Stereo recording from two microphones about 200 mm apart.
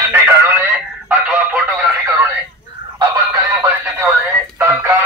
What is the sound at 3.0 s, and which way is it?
Fowl, 15° right (ahead or behind).